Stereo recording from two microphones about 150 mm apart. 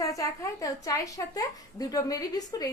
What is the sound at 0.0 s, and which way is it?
Speech, 20° left (ahead or behind).